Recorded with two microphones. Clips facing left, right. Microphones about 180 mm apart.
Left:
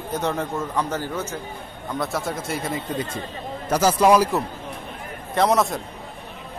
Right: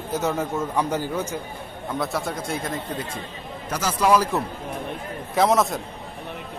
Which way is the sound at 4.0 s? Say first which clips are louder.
Left 2 dB; 15° left (ahead or behind).